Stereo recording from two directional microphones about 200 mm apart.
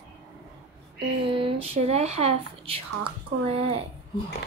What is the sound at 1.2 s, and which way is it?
Speech, 25° right (ahead or behind).